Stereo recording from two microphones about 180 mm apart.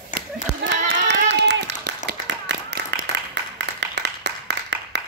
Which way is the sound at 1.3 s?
75° right (ahead or behind).